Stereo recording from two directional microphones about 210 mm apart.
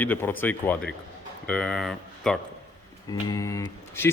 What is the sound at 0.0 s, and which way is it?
Speech, 10° left (ahead or behind).